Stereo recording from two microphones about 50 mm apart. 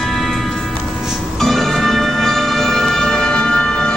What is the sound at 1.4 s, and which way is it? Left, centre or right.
Music, centre.